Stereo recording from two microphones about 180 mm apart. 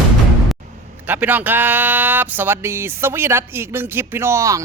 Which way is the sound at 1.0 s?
10° right (ahead or behind).